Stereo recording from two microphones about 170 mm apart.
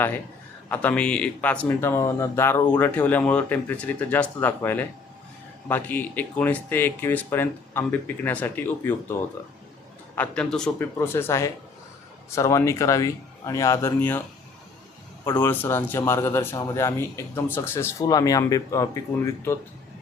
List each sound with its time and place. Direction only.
0.7 s speech: 10° left (ahead or behind)
10.2 s speech: 5° left (ahead or behind)
15.2 s speech: 15° left (ahead or behind)